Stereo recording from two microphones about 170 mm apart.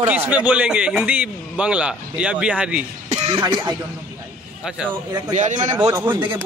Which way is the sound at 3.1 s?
25° right (ahead or behind).